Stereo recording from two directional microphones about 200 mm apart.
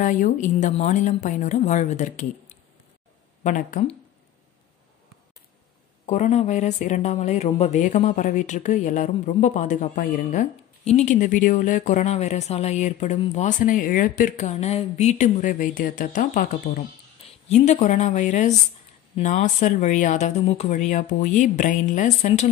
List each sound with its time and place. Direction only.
0.0 s speech: 40° left (ahead or behind)
3.4 s speech: 40° left (ahead or behind)
6.0 s speech: 35° left (ahead or behind)